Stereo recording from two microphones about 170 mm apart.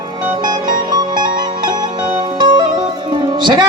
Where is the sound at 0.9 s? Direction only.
25° right (ahead or behind).